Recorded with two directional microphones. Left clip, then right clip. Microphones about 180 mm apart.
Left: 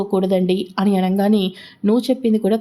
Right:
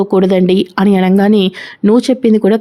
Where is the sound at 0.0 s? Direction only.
35° right (ahead or behind).